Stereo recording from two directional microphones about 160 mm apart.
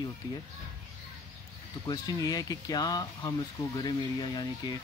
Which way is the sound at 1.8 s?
25° left (ahead or behind).